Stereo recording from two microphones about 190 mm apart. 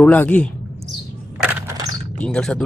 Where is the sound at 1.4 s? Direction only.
15° right (ahead or behind).